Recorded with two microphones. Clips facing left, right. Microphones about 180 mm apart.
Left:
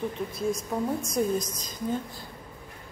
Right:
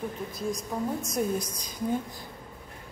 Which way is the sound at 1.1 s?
10° right (ahead or behind).